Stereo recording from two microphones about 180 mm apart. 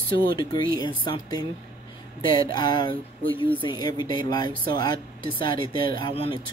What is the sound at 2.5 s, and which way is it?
Speech, 25° left (ahead or behind).